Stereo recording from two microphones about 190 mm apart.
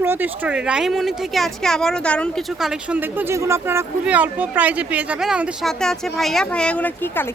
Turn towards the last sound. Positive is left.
turn(degrees=10)  # may be behind; listen again after turning